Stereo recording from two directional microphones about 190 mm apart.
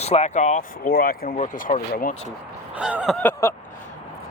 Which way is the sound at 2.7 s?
5° right (ahead or behind).